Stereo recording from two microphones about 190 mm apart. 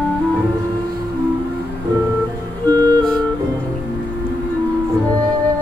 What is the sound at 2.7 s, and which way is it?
Music, 20° right (ahead or behind).